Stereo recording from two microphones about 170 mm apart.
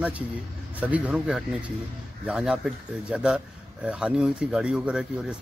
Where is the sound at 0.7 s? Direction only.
10° right (ahead or behind).